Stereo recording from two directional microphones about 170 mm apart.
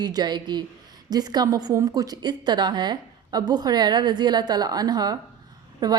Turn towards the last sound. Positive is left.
turn(degrees=-25)  # may be behind; listen again after turning